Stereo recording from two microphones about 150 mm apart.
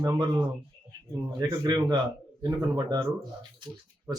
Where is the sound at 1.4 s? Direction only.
25° right (ahead or behind).